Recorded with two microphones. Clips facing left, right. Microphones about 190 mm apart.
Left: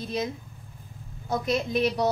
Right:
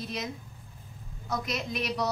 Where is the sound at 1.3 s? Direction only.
30° left (ahead or behind).